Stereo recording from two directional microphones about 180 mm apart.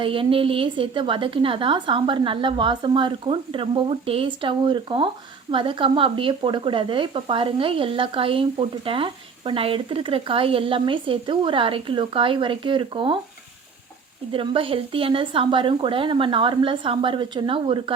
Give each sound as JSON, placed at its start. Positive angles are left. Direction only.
{"t": 0.0, "sound": "speech", "side_deg": -30}
{"t": 14.3, "sound": "speech", "side_deg": -30}